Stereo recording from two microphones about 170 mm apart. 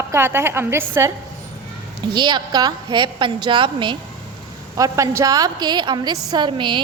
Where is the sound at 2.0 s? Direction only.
25° right (ahead or behind).